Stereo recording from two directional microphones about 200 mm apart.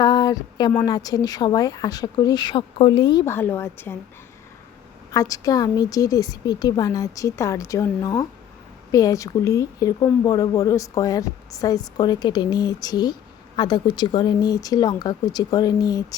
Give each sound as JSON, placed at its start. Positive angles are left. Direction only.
{"t": 0.0, "sound": "speech", "side_deg": 20}
{"t": 3.2, "sound": "speech", "side_deg": 10}
{"t": 5.1, "sound": "speech", "side_deg": 15}